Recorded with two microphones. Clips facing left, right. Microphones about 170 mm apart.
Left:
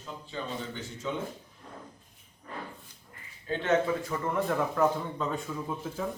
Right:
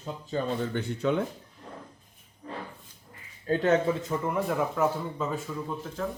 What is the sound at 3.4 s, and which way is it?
Speech, 40° right (ahead or behind).